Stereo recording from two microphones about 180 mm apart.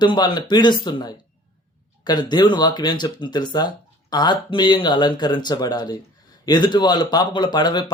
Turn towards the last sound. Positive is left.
turn(degrees=25)  # may be behind; listen again after turning